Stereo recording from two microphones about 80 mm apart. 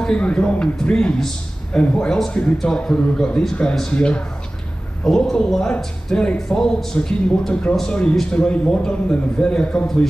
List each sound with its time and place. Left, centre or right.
0.0 s speech: centre